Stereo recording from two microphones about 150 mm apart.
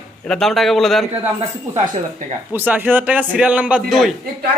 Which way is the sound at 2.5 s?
10° right (ahead or behind).